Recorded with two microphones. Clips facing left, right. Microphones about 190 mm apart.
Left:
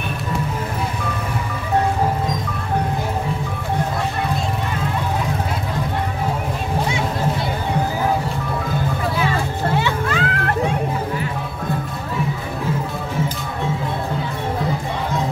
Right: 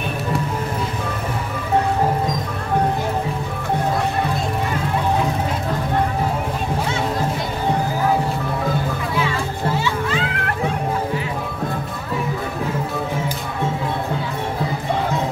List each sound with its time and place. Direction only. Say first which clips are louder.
9.8 s children playing: left 1 dB; 55° left (ahead or behind)